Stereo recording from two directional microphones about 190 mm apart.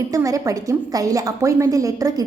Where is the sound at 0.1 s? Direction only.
15° right (ahead or behind).